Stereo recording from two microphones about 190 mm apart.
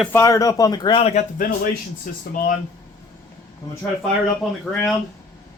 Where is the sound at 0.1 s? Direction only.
15° left (ahead or behind).